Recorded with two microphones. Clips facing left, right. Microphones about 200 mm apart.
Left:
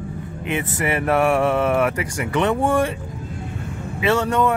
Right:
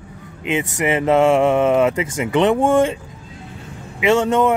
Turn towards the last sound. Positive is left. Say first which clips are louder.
# right 3 dB
turn(degrees=-20)  # may be behind; listen again after turning